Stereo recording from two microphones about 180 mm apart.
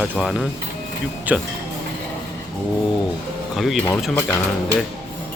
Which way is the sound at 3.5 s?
Centre (ahead or behind).